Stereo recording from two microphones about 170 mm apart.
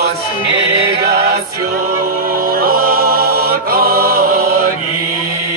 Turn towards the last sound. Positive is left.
turn(degrees=-60)  # may be behind; listen again after turning